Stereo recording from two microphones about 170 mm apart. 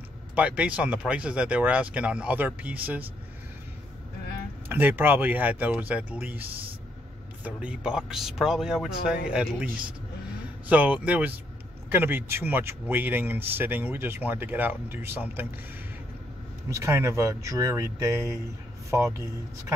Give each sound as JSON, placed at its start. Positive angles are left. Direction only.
{"t": 0.4, "sound": "speech", "side_deg": -10}
{"t": 4.6, "sound": "speech", "side_deg": -10}
{"t": 7.4, "sound": "speech", "side_deg": -5}
{"t": 10.7, "sound": "speech", "side_deg": -10}
{"t": 16.6, "sound": "speech", "side_deg": -15}